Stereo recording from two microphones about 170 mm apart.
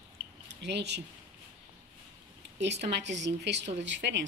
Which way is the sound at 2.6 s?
85° right.